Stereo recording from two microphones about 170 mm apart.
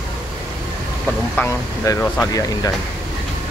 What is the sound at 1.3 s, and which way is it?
Speech, 15° left (ahead or behind).